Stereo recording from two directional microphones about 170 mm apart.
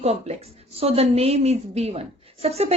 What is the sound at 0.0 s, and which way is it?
A woman's voice, 40° right (ahead or behind).